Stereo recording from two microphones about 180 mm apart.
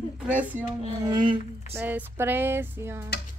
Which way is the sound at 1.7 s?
10° right (ahead or behind).